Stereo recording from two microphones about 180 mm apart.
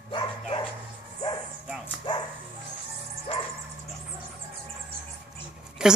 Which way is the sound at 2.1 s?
25° left (ahead or behind).